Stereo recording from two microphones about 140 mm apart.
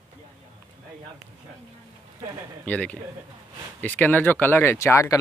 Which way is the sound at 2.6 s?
10° left (ahead or behind).